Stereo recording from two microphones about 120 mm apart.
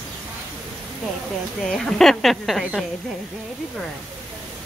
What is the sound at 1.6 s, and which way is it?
Speech, centre (ahead or behind).